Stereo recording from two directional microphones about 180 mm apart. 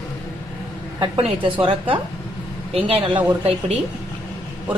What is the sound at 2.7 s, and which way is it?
Speech, 30° right (ahead or behind).